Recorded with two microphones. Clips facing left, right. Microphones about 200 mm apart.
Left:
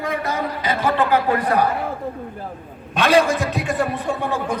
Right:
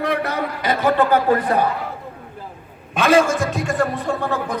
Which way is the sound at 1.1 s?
35° right (ahead or behind).